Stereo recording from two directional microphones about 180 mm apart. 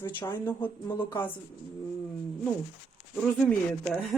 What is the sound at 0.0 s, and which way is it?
Speech, 10° left (ahead or behind).